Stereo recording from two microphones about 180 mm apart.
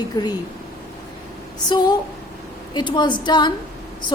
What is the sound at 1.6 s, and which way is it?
Speech, 25° left (ahead or behind).